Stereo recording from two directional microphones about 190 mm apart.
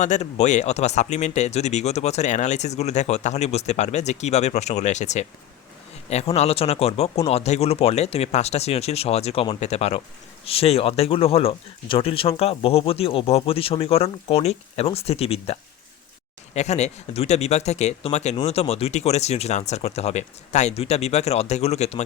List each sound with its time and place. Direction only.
0.0 s speech: 35° left (ahead or behind)
16.6 s speech: 35° left (ahead or behind)